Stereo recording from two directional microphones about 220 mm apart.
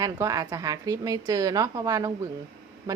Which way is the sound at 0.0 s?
15° right (ahead or behind).